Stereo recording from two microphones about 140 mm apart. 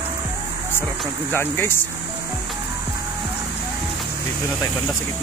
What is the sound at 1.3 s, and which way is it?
Speech, 15° left (ahead or behind).